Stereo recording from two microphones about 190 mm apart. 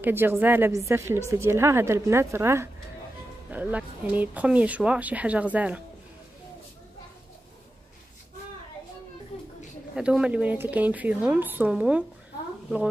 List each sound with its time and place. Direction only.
0.0 s a woman's voice: 10° right (ahead or behind)
9.3 s a sound: 30° left (ahead or behind)
9.9 s a woman's voice: 5° right (ahead or behind)